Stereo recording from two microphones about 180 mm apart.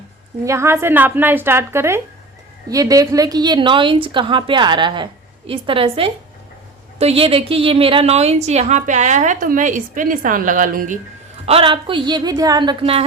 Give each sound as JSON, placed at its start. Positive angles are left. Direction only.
{"t": 0.4, "sound": "a woman's voice", "side_deg": -15}
{"t": 11.4, "sound": "a woman's voice", "side_deg": -30}